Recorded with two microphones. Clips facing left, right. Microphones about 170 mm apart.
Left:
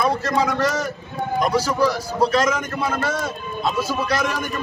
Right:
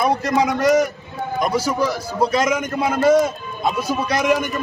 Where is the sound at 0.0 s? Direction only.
20° right (ahead or behind).